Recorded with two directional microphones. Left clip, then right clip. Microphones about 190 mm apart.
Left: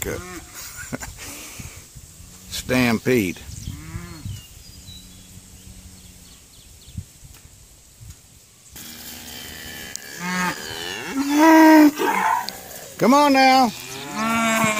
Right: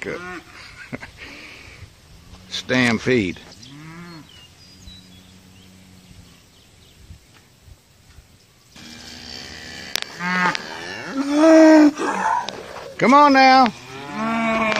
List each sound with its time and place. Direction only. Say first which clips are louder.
0.6 s a sound: left 2 dB; 25° left (ahead or behind)
2.5 s speech: right 2 dB; 15° left (ahead or behind)
3.8 s livestock: even; centre (ahead or behind)
10.1 s cattle: right 4 dB; 15° left (ahead or behind)
11.0 s livestock: even; 45° right (ahead or behind)
12.9 s speech: right 3 dB; 35° left (ahead or behind)
13.2 s speech: right 3 dB; 15° left (ahead or behind)
14.1 s livestock: left 1 dB; 5° right (ahead or behind)